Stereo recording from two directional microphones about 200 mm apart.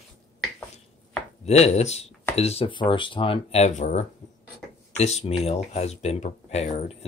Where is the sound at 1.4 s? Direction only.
35° left (ahead or behind).